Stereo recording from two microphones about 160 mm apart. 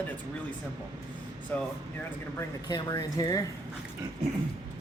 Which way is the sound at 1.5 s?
10° left (ahead or behind).